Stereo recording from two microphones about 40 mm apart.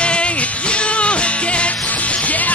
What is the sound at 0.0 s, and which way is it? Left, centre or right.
Music, left.